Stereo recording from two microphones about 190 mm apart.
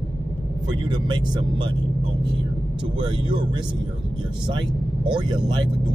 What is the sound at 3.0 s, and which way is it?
Speech, 25° right (ahead or behind).